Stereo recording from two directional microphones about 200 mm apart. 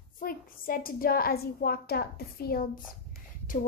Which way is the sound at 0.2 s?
45° left (ahead or behind).